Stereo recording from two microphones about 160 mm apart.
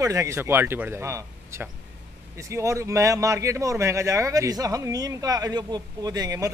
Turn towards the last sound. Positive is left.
turn(degrees=-20)  # may be behind; listen again after turning